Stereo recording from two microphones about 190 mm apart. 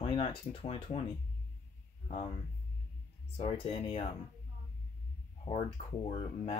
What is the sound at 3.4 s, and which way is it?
Speech, 30° left (ahead or behind).